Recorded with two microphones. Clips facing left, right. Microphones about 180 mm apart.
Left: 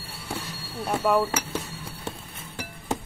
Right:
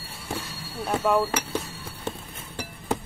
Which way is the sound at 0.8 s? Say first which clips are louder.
Even; centre (ahead or behind).